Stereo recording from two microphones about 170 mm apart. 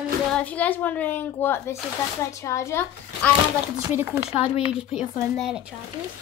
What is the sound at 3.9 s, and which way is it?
Speech, 15° right (ahead or behind).